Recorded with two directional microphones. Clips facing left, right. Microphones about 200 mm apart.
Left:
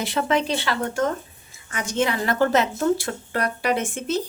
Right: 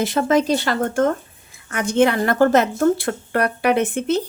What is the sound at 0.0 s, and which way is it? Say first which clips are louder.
A woman's voice: right 5 dB; 45° right (ahead or behind).